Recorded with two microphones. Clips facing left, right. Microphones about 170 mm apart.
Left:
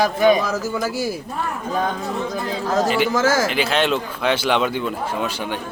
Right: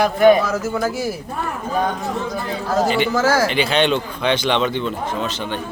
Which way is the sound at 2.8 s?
Centre (ahead or behind).